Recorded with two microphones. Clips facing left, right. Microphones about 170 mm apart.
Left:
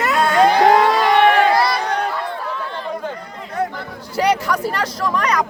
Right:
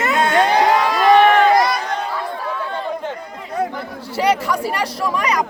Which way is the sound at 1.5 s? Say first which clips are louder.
Right 2 dB; 30° left (ahead or behind).